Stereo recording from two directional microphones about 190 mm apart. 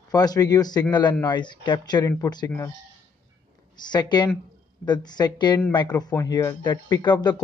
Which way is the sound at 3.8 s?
20° left (ahead or behind).